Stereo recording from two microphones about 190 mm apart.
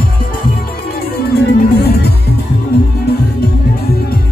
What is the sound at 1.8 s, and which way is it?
Music, 60° left (ahead or behind).